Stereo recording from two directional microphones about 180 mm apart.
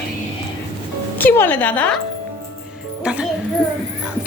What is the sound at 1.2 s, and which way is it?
Speech, 10° left (ahead or behind).